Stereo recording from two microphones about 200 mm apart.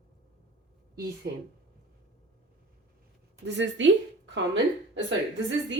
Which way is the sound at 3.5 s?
65° right (ahead or behind).